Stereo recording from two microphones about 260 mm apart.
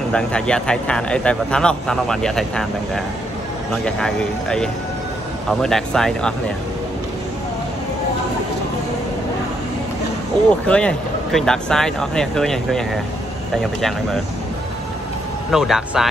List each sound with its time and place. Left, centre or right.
0.1 s speech: centre
10.5 s speech: centre
15.5 s speech: centre